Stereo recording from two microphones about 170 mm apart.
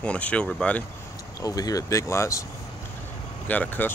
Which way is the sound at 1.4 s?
20° left (ahead or behind).